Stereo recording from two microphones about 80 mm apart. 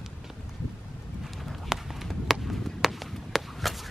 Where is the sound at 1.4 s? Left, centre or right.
Centre.